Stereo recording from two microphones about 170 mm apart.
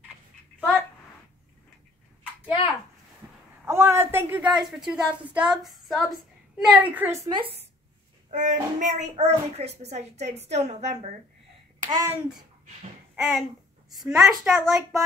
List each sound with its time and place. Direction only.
3.6 s a woman's voice: 15° right (ahead or behind)
7.2 s a woman's voice: 30° right (ahead or behind)
8.3 s a child's voice: 45° right (ahead or behind)
11.8 s a child's voice: 25° right (ahead or behind)
13.1 s a sound: centre (ahead or behind)
13.9 s a woman's voice: centre (ahead or behind)